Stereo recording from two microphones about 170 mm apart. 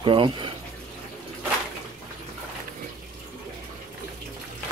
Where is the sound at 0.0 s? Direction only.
30° right (ahead or behind).